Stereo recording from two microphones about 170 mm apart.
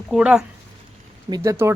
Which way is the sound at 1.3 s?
15° right (ahead or behind).